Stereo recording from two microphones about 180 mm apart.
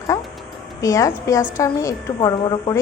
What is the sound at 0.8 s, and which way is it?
A woman's voice, 15° left (ahead or behind).